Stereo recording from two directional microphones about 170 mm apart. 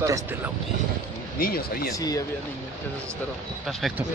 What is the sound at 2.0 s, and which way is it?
Speech, 20° left (ahead or behind).